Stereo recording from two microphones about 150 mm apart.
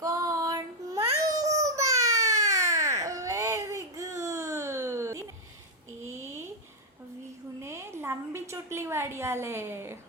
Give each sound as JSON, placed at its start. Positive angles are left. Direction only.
{"t": 0.0, "sound": "child singing", "side_deg": -25}
{"t": 1.4, "sound": "baby cry", "side_deg": -20}
{"t": 6.0, "sound": "a sound", "side_deg": -15}
{"t": 7.6, "sound": "a woman's voice", "side_deg": -20}